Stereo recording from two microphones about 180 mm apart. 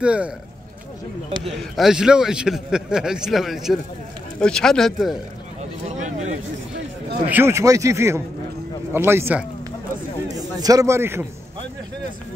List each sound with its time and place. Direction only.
0.0 s speech: 5° right (ahead or behind)
1.4 s a man's voice: centre (ahead or behind)
5.6 s a sound: 40° right (ahead or behind)
7.2 s speech: 10° right (ahead or behind)